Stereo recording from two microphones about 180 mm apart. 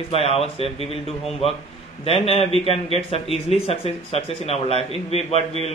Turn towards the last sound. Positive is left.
turn(degrees=35)  # may be behind; listen again after turning